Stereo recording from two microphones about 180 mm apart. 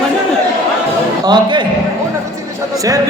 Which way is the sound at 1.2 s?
25° right (ahead or behind).